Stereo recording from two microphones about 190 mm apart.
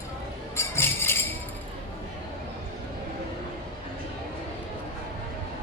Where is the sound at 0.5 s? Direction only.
15° left (ahead or behind).